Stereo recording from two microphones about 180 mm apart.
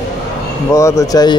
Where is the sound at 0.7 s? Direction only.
15° left (ahead or behind).